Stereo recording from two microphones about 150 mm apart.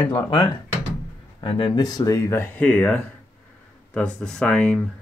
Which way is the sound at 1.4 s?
35° left (ahead or behind).